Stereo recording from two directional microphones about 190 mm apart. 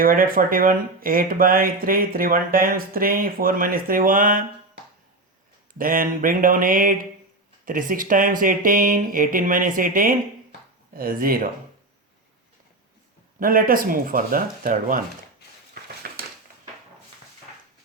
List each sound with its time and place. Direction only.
0.0 s speech: 50° right (ahead or behind)
5.7 s speech: 50° right (ahead or behind)
13.4 s speech: 50° right (ahead or behind)
16.0 s a sound: 55° right (ahead or behind)